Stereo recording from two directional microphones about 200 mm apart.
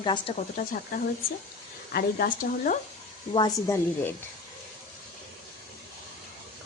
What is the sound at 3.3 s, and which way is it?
Speech, 20° left (ahead or behind).